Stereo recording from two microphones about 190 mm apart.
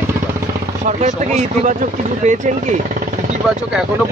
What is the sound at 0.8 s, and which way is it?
Speech, 40° right (ahead or behind).